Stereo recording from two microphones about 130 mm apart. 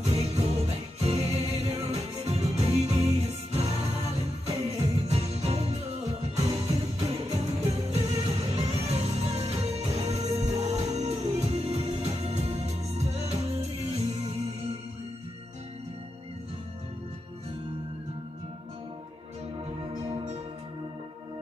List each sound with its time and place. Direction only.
0.0 s music: 55° right (ahead or behind)